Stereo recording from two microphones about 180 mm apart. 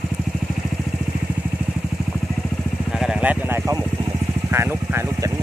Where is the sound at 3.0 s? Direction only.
5° right (ahead or behind).